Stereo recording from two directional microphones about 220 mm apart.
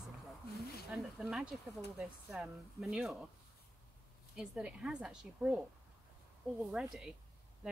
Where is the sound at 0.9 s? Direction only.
Centre (ahead or behind).